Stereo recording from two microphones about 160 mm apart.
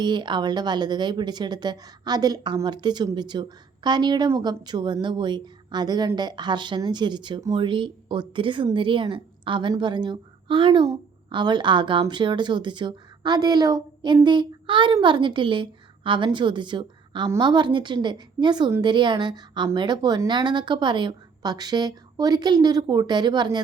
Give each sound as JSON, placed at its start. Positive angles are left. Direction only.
{"t": 0.0, "sound": "a woman's voice", "side_deg": -30}